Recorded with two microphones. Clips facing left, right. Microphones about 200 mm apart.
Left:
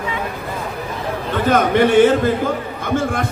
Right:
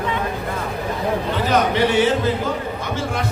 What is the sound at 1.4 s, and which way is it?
Speech, 50° left (ahead or behind).